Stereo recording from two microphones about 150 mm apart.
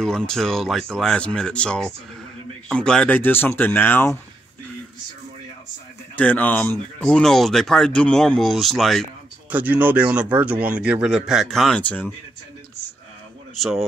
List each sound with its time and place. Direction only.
0.0 s speech: 5° left (ahead or behind)
6.1 s speech: 10° left (ahead or behind)
9.5 s a man's voice: 10° right (ahead or behind); by 12.1 s 10° left (ahead or behind)
13.6 s speech: centre (ahead or behind)